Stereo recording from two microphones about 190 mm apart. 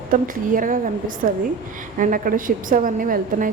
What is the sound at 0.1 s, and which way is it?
A woman's voice, 45° right (ahead or behind).